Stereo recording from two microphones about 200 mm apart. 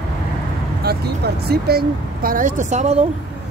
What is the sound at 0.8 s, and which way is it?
Speech, 50° right (ahead or behind).